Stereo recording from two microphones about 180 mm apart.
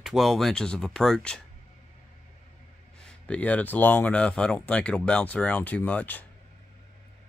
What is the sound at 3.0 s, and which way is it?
Speech, 5° left (ahead or behind).